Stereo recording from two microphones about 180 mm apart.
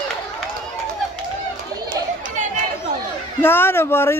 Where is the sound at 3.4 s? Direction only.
15° left (ahead or behind).